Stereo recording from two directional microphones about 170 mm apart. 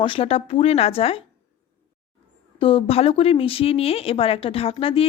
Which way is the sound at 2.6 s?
30° left (ahead or behind).